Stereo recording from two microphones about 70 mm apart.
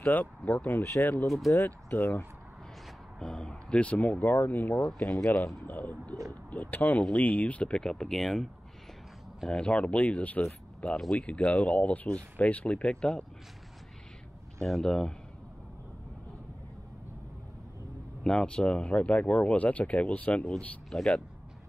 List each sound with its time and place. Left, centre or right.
0.0 s speech: left
1.2 s speech: centre
1.9 s speech: left
3.2 s speech: centre; by 4.7 s left
4.9 s speech: centre
9.5 s speech: centre
14.7 s speech: centre
18.2 s speech: centre
20.9 s speech: centre